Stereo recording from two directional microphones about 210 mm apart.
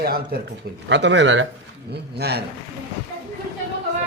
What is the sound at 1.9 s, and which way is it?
Speech, 50° right (ahead or behind).